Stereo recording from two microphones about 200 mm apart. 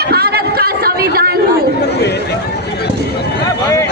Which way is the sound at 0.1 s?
50° right (ahead or behind).